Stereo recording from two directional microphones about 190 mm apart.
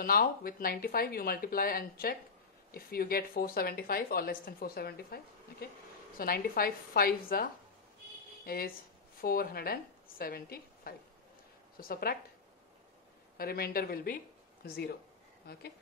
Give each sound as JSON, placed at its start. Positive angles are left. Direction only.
{"t": 0.0, "sound": "speech", "side_deg": 50}
{"t": 8.5, "sound": "a woman's voice", "side_deg": 50}
{"t": 13.4, "sound": "speech", "side_deg": 50}